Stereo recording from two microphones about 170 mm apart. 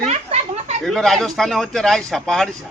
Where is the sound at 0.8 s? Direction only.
Centre (ahead or behind).